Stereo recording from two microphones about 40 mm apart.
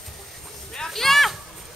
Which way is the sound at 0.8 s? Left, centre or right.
Centre.